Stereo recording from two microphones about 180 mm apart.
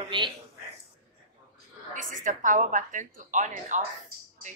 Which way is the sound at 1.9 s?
45° right (ahead or behind).